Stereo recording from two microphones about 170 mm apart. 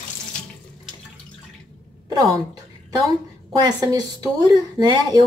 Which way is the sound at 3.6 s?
25° right (ahead or behind).